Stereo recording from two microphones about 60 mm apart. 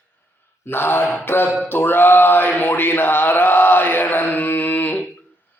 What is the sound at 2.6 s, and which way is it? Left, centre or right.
Mantra, left.